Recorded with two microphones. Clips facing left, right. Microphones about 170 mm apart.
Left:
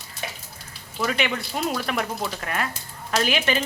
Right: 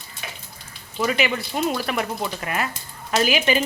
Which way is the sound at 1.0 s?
5° right (ahead or behind).